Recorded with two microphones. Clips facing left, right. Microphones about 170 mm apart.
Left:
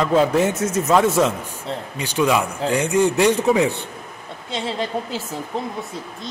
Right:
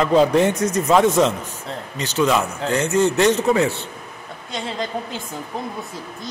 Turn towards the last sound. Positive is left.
turn(degrees=30)  # may be behind; listen again after turning